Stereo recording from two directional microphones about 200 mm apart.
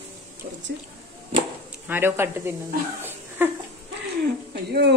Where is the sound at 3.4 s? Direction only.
10° right (ahead or behind).